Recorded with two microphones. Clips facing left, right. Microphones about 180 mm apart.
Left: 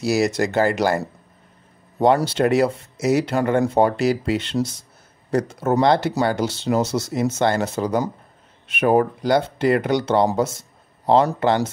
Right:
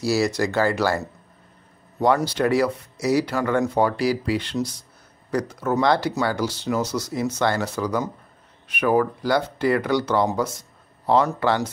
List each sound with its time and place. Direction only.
0.0 s speech: 20° left (ahead or behind)
2.0 s speech: 25° left (ahead or behind)